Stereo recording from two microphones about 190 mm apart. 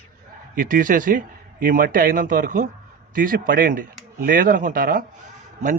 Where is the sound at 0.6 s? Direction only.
45° right (ahead or behind).